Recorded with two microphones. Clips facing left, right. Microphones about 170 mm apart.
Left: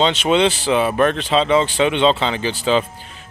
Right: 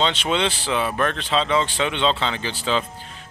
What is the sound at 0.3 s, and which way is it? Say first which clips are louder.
Speech: left 7 dB; 15° left (ahead or behind).